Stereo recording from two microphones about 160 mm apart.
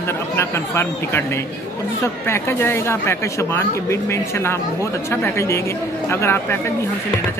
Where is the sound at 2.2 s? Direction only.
15° left (ahead or behind).